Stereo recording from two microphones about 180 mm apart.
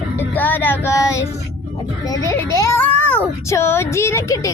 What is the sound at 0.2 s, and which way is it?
A child's voice, 10° left (ahead or behind).